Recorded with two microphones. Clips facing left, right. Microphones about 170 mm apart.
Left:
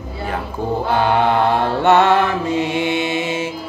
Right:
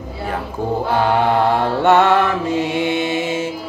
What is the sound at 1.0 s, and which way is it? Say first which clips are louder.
Mantra: even; 45° right (ahead or behind).